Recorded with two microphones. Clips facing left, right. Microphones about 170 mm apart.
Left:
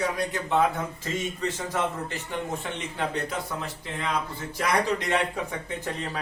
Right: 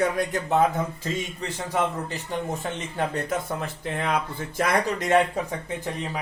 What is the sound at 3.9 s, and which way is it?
Speech, 55° right (ahead or behind).